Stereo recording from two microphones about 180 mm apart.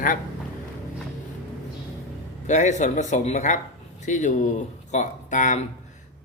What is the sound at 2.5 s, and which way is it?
Speech, 40° left (ahead or behind).